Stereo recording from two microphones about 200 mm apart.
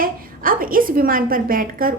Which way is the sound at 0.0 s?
45° right (ahead or behind).